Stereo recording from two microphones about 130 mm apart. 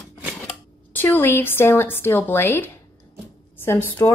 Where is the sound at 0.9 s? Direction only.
15° left (ahead or behind).